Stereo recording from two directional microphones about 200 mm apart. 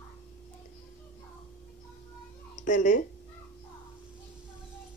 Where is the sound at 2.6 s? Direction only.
40° left (ahead or behind).